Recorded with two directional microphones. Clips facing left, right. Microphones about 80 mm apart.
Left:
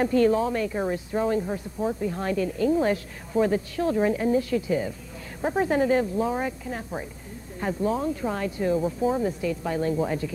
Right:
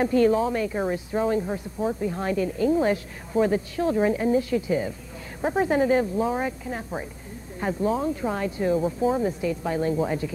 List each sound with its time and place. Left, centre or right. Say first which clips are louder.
0.0 s speech: right 1 dB; centre